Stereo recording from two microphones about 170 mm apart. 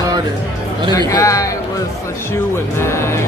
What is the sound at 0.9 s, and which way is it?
Speech, 20° left (ahead or behind).